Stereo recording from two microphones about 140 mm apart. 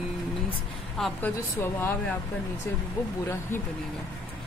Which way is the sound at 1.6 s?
15° left (ahead or behind).